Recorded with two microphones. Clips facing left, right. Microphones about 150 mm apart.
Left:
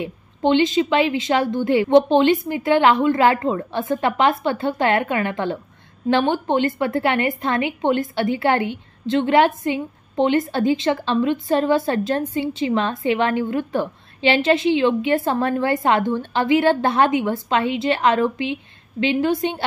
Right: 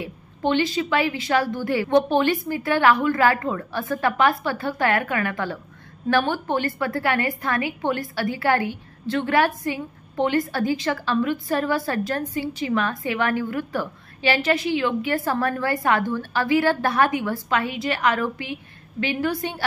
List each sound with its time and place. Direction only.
0.0 s a woman's voice: 20° left (ahead or behind)